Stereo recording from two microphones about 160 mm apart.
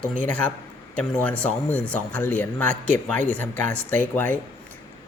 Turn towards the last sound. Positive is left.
turn(degrees=10)  # may be behind; listen again after turning